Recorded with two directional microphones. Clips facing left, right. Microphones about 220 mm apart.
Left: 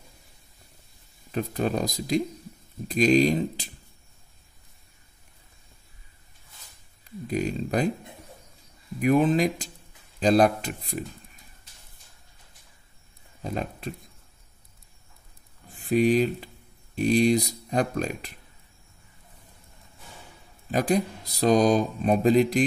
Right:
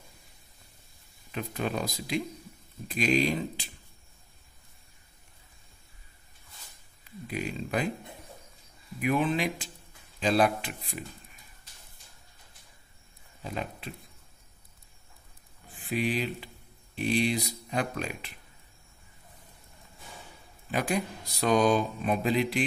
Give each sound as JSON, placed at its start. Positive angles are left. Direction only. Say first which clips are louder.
{"t": 1.3, "sound": "speech", "louder": "left 5 dB", "side_deg": 40}
{"t": 7.2, "sound": "speech", "louder": "left 6 dB", "side_deg": 40}
{"t": 9.0, "sound": "speech", "louder": "left 6 dB", "side_deg": 40}
{"t": 13.4, "sound": "speech", "louder": "left 5 dB", "side_deg": 40}
{"t": 15.7, "sound": "speech", "louder": "left 9 dB", "side_deg": 45}
{"t": 20.7, "sound": "speech", "louder": "left 6 dB", "side_deg": 40}